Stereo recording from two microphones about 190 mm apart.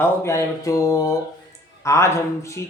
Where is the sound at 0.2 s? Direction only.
15° left (ahead or behind).